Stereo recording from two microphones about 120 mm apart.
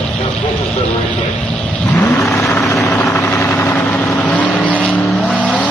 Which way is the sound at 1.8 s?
15° left (ahead or behind).